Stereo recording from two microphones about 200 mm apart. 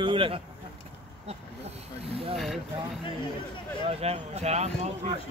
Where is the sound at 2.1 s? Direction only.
30° right (ahead or behind).